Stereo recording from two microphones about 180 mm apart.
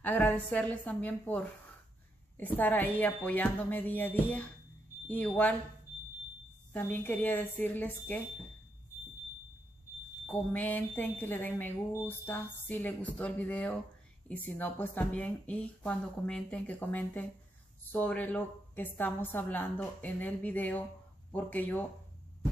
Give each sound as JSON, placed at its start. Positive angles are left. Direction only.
{"t": 0.0, "sound": "speech", "side_deg": 10}
{"t": 6.7, "sound": "speech", "side_deg": 10}
{"t": 10.2, "sound": "speech", "side_deg": 10}